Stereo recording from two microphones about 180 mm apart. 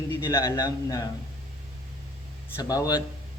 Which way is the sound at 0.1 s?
15° left (ahead or behind).